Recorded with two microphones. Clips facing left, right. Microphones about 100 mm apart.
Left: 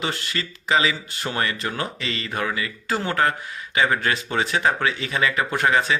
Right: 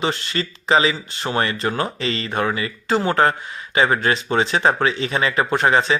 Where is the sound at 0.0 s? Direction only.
30° right (ahead or behind).